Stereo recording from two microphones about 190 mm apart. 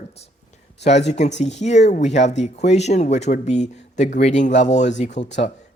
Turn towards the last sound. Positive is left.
turn(degrees=40)  # may be behind; listen again after turning